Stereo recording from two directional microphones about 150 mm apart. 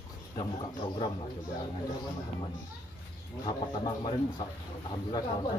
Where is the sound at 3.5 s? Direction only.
30° left (ahead or behind).